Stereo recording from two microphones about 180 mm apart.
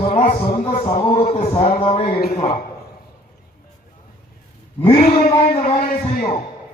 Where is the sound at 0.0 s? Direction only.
30° left (ahead or behind).